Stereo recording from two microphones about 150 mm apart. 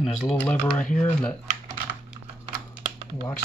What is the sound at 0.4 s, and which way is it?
Speech, 10° left (ahead or behind).